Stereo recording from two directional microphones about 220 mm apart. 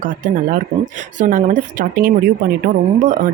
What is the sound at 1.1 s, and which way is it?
Speech, 35° right (ahead or behind).